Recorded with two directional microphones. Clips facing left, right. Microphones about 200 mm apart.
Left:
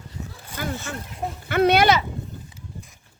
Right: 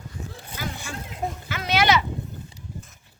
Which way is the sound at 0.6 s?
55° left (ahead or behind).